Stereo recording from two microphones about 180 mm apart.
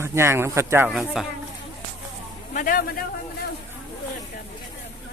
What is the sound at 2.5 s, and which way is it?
Speech, 50° left (ahead or behind).